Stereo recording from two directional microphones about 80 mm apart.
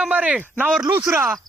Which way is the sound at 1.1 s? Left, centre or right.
Right.